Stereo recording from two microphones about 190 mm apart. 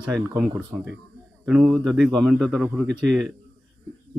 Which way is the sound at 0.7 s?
Centre (ahead or behind).